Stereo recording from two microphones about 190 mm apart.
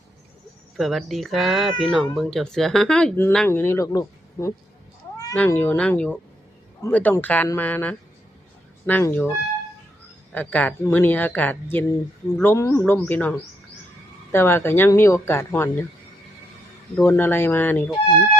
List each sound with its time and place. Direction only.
0.8 s speech: centre (ahead or behind); by 4.5 s 15° left (ahead or behind)
5.1 s cat: 20° left (ahead or behind)
5.4 s speech: 10° left (ahead or behind)
10.3 s speech: 5° left (ahead or behind)
17.0 s speech: 10° left (ahead or behind)